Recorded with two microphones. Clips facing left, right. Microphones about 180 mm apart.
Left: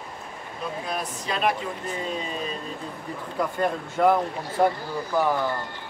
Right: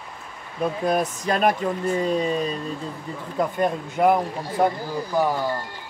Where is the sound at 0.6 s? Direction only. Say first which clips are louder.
Right 9 dB; 50° right (ahead or behind).